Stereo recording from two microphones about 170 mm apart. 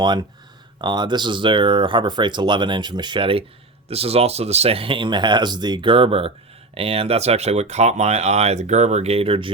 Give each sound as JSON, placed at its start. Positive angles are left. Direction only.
{"t": 0.8, "sound": "speech", "side_deg": -25}